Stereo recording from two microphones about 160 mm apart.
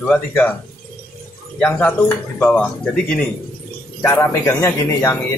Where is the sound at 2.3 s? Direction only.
10° left (ahead or behind).